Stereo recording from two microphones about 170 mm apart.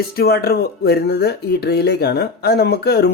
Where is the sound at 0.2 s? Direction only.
65° left (ahead or behind).